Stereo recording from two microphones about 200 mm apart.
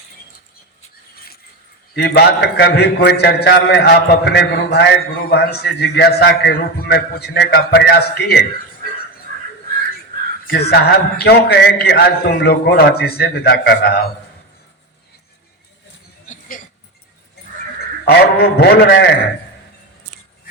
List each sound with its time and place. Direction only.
2.0 s a man's voice: 55° left (ahead or behind)
10.4 s a man's voice: 50° left (ahead or behind)
16.2 s a sound: 40° left (ahead or behind)
18.0 s a man's voice: 50° left (ahead or behind)